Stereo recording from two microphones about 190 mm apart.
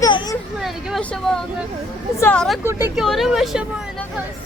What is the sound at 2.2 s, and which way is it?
Speech, 5° left (ahead or behind).